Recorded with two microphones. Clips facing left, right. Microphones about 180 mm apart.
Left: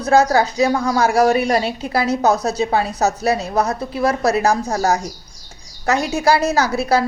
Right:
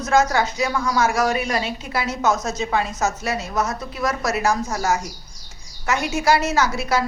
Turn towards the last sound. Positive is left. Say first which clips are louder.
# left 4 dB
turn(degrees=35)  # may be behind; listen again after turning